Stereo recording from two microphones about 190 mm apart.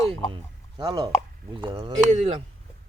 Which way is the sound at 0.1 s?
25° right (ahead or behind).